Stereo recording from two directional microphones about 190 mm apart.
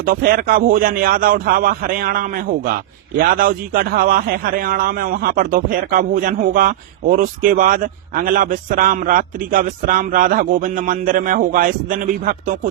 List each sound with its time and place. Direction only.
0.0 s a man's voice: 50° right (ahead or behind)